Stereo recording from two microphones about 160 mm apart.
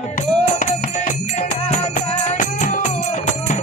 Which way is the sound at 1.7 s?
50° left (ahead or behind).